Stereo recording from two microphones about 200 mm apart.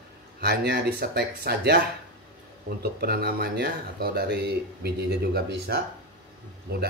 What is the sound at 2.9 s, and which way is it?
A man's voice, 50° right (ahead or behind).